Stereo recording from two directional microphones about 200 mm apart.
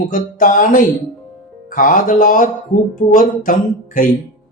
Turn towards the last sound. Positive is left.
turn(degrees=40)  # may be behind; listen again after turning